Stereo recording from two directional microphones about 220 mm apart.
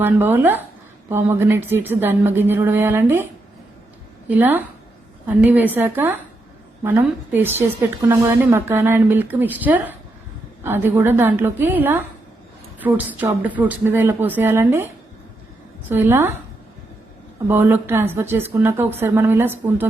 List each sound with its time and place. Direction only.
0.0 s a woman's voice: 10° right (ahead or behind)
4.3 s a woman's voice: 10° right (ahead or behind)
15.9 s a woman's voice: 10° right (ahead or behind)
17.5 s a woman's voice: 10° right (ahead or behind)